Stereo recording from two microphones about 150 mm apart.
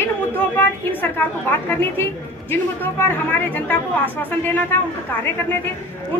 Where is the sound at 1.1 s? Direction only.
15° left (ahead or behind).